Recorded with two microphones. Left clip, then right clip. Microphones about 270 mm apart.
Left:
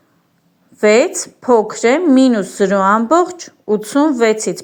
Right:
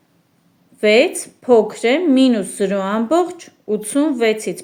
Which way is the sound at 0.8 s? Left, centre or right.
Centre.